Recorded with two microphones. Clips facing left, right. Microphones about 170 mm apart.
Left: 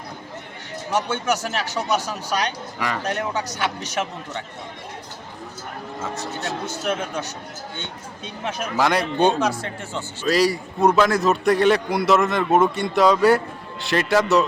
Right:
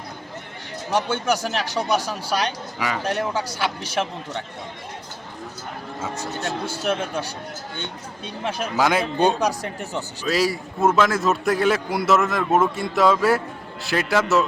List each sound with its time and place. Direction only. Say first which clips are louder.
0.9 s speech: right 1 dB; 10° right (ahead or behind)
6.0 s a man's voice: right 1 dB; centre (ahead or behind)
7.1 s speech: right 1 dB; 10° right (ahead or behind)
8.7 s a man's voice: even; centre (ahead or behind)